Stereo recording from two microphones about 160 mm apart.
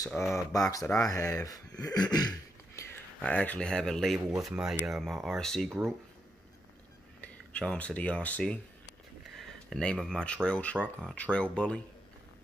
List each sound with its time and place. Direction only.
0.1 s speech: centre (ahead or behind)
0.5 s speech: 20° left (ahead or behind)
1.9 s throat clearing: 25° left (ahead or behind)
3.2 s speech: 10° left (ahead or behind)
7.2 s speech: 5° left (ahead or behind)
9.4 s a sound: 5° left (ahead or behind)
10.0 s speech: 5° left (ahead or behind)